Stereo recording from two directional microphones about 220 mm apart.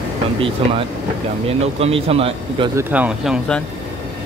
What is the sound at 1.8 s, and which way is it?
Speech, 25° right (ahead or behind).